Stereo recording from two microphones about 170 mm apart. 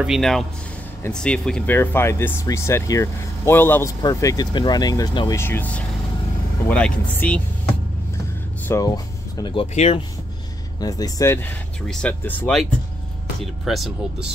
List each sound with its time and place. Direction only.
0.0 s speech: centre (ahead or behind); by 5.4 s 25° left (ahead or behind)
5.4 s speech: 10° left (ahead or behind)
8.6 s speech: 20° left (ahead or behind)
9.8 s speech: 40° left (ahead or behind)
10.8 s speech: 20° left (ahead or behind); by 13.9 s centre (ahead or behind)